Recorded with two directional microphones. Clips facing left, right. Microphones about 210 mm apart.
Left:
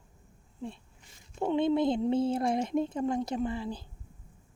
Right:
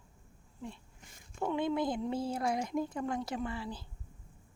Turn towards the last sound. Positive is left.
turn(degrees=20)  # may be behind; listen again after turning